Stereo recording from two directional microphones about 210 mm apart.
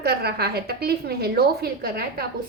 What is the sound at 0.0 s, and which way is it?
A woman's voice, 50° right (ahead or behind).